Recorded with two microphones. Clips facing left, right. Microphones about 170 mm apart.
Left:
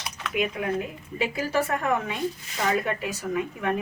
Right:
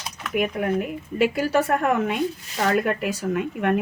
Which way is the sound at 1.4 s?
65° right (ahead or behind).